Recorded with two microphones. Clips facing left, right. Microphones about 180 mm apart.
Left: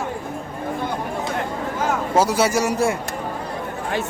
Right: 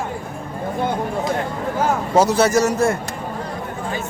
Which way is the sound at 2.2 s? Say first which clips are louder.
Right 3 dB; 10° left (ahead or behind).